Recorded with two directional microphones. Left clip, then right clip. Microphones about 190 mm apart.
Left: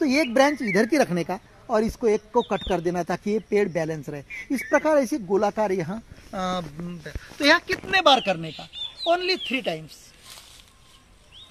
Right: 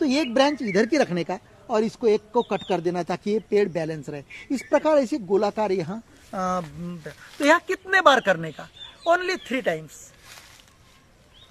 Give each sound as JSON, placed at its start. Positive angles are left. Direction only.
{"t": 0.0, "sound": "speech", "side_deg": 25}
{"t": 0.5, "sound": "speech", "side_deg": 10}
{"t": 5.3, "sound": "speech", "side_deg": 20}
{"t": 6.3, "sound": "speech", "side_deg": 0}
{"t": 6.9, "sound": "speech", "side_deg": -10}